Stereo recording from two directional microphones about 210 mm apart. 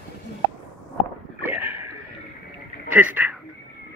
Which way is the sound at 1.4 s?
10° right (ahead or behind).